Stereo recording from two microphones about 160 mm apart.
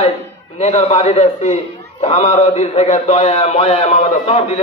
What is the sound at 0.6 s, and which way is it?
A man's voice, 45° left (ahead or behind).